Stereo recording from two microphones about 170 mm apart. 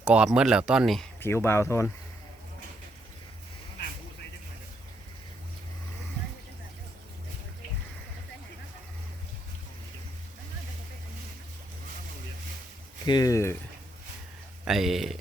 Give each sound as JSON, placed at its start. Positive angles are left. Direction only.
{"t": 0.0, "sound": "speech", "side_deg": -5}
{"t": 1.2, "sound": "speech", "side_deg": 15}
{"t": 13.1, "sound": "speech", "side_deg": 20}
{"t": 14.6, "sound": "speech", "side_deg": 0}